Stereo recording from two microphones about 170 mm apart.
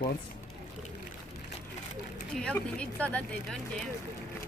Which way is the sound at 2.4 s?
5° left (ahead or behind).